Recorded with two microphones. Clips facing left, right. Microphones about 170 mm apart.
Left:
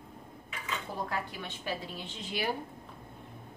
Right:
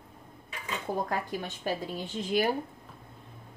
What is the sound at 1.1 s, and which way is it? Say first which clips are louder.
Speech: right 4 dB; 45° right (ahead or behind).